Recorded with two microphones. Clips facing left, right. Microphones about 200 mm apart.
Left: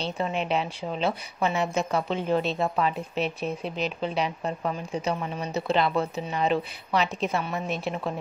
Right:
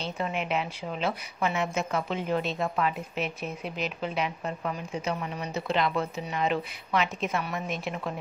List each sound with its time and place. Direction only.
0.0 s a woman's voice: 30° left (ahead or behind)